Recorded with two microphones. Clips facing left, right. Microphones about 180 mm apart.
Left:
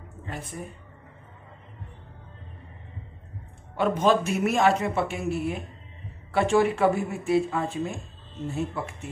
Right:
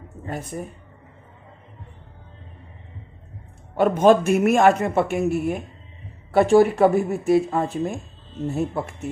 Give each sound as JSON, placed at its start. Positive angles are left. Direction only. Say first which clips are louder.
{"t": 3.7, "sound": "a man's voice", "louder": "right 6 dB", "side_deg": -50}